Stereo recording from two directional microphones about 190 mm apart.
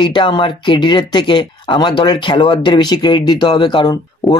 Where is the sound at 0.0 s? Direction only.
25° left (ahead or behind).